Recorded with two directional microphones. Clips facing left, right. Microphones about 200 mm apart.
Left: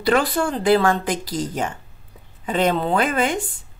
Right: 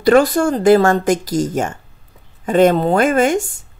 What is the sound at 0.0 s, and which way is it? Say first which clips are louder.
Speech: right 7 dB; 45° right (ahead or behind).